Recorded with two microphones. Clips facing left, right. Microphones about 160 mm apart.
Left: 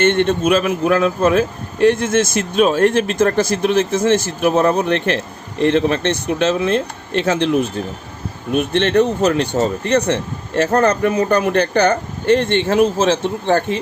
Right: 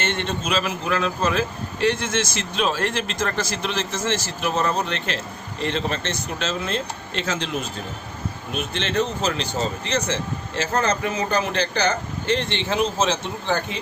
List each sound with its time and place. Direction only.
0.0 s a man's voice: 55° left (ahead or behind)